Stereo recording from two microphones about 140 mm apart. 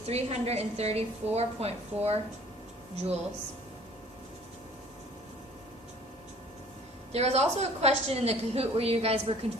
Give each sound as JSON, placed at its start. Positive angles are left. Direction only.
{"t": 0.1, "sound": "a woman's voice", "side_deg": -50}
{"t": 7.1, "sound": "a woman's voice", "side_deg": -50}